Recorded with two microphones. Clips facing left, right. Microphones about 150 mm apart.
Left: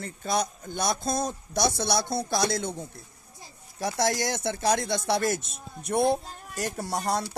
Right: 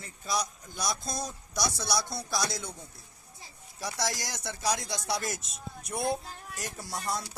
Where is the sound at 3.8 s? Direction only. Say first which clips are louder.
Left 8 dB; 55° left (ahead or behind); by 7.4 s 70° left (ahead or behind).